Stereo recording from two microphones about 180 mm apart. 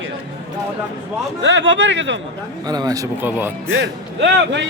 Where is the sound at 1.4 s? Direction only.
90° right.